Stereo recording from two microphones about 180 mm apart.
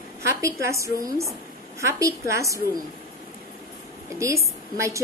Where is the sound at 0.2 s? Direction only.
15° right (ahead or behind).